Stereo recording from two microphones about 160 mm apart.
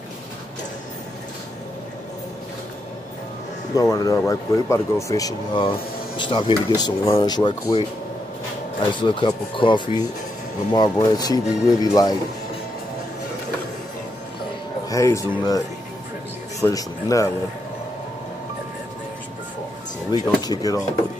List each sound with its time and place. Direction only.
3.7 s speech: 20° left (ahead or behind)
9.0 s speech: 30° left (ahead or behind)
14.9 s speech: 20° left (ahead or behind)
20.1 s speech: 25° left (ahead or behind)